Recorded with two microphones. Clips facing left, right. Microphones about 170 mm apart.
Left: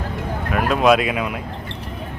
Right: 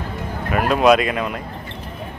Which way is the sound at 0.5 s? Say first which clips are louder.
Right 1 dB; centre (ahead or behind).